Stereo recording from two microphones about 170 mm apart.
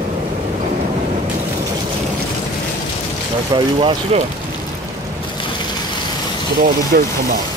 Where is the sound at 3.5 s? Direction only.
30° right (ahead or behind).